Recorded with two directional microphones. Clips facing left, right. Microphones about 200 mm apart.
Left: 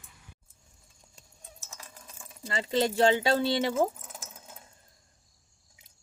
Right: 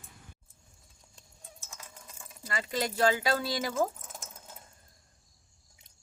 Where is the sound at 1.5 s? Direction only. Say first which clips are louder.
Left 1 dB; centre (ahead or behind).